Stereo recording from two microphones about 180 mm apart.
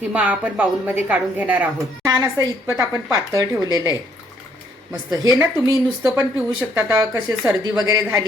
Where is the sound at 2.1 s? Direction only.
20° right (ahead or behind).